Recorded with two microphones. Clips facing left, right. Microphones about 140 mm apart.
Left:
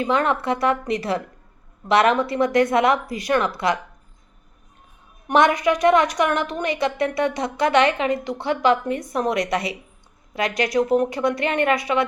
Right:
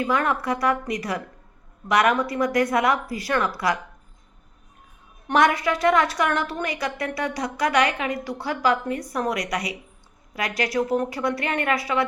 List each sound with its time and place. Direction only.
0.0 s a woman's voice: 25° left (ahead or behind)
5.3 s a woman's voice: 20° left (ahead or behind)